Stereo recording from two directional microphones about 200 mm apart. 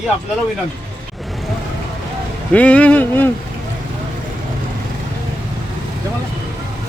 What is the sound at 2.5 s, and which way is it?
Speech, 5° left (ahead or behind).